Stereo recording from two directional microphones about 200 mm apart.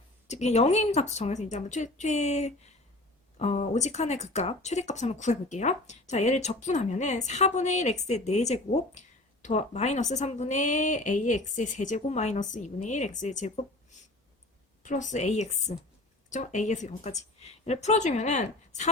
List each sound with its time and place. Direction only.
0.3 s speech: 35° left (ahead or behind)
14.8 s speech: 35° left (ahead or behind)